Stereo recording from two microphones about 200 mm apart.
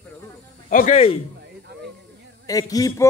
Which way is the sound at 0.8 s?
30° left (ahead or behind).